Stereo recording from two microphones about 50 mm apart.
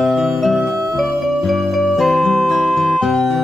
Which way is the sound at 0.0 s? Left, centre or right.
Centre.